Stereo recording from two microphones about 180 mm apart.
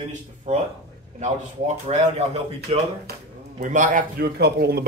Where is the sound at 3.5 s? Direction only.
45° right (ahead or behind); by 4.8 s 60° right (ahead or behind).